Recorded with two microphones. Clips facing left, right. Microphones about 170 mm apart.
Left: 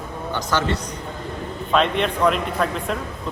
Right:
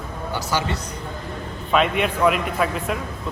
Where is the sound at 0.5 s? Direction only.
10° right (ahead or behind).